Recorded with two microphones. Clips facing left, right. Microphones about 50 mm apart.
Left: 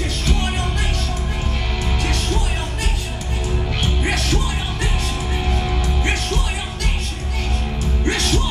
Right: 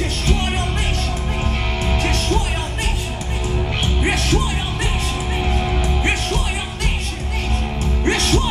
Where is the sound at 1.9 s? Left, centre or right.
Right.